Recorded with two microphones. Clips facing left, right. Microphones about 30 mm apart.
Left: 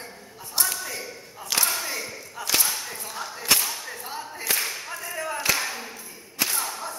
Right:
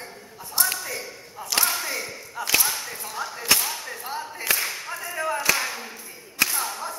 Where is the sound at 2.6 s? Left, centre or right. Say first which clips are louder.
Right 1 dB; centre.